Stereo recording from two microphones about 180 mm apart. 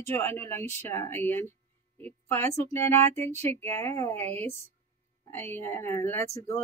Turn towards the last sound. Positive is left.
turn(degrees=15)  # may be behind; listen again after turning